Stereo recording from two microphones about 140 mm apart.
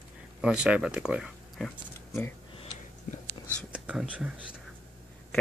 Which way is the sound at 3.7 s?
5° right (ahead or behind).